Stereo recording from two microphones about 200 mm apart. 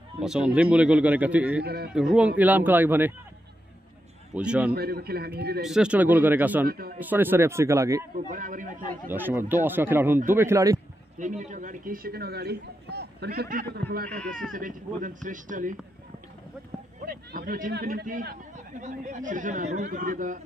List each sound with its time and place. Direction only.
0.2 s a man's voice: 5° right (ahead or behind)
1.6 s speech: 50° right (ahead or behind)
1.9 s a man's voice: 5° right (ahead or behind)
4.4 s speech: 5° right (ahead or behind)
4.7 s speech: 50° right (ahead or behind)
5.6 s a man's voice: 5° right (ahead or behind)
6.6 s speech: 50° right (ahead or behind)
7.0 s a man's voice: 10° right (ahead or behind)
8.3 s speech: 40° right (ahead or behind)
9.1 s a man's voice: 10° right (ahead or behind)
11.1 s speech: 40° right (ahead or behind)
14.0 s speech: 5° left (ahead or behind)
14.5 s speech: 40° right (ahead or behind)
17.0 s speech: 45° right (ahead or behind)